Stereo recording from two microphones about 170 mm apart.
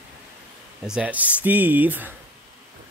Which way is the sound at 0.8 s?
5° right (ahead or behind).